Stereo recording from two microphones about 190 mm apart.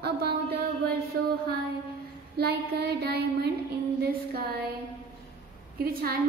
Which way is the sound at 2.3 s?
55° right (ahead or behind).